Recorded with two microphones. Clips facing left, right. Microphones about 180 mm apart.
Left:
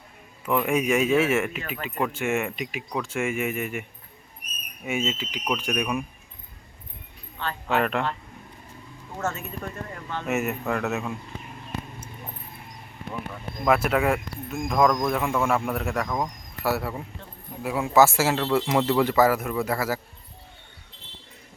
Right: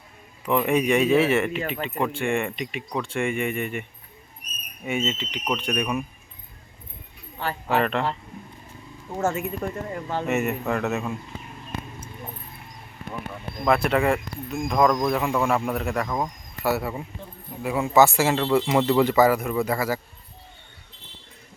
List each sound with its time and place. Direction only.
0.4 s speech: centre (ahead or behind)
7.3 s speech: 10° right (ahead or behind)
7.8 s speech: 5° left (ahead or behind)
9.6 s speech: 30° right (ahead or behind)
10.2 s speech: centre (ahead or behind)
13.7 s speech: 5° left (ahead or behind)